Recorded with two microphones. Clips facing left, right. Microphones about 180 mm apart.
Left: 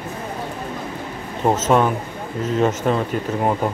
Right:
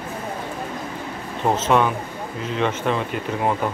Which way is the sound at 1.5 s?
45° left (ahead or behind).